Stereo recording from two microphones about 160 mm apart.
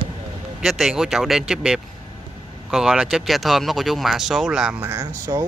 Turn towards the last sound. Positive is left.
turn(degrees=-20)  # may be behind; listen again after turning